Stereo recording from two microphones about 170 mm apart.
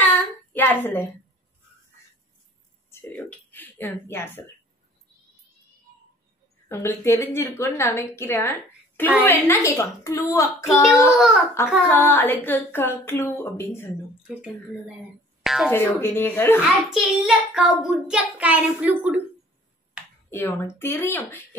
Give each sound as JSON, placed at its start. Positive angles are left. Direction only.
{"t": 0.0, "sound": "a sound", "side_deg": 10}
{"t": 2.9, "sound": "a sound", "side_deg": 15}
{"t": 3.2, "sound": "a woman's voice", "side_deg": 10}
{"t": 6.7, "sound": "a woman's voice", "side_deg": 15}
{"t": 15.4, "sound": "speech", "side_deg": 0}
{"t": 16.0, "sound": "a woman's voice", "side_deg": 15}
{"t": 16.6, "sound": "child singing", "side_deg": -5}
{"t": 20.2, "sound": "a woman's voice", "side_deg": 15}